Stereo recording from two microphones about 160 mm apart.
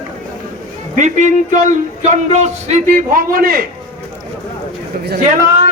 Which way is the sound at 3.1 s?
65° right (ahead or behind).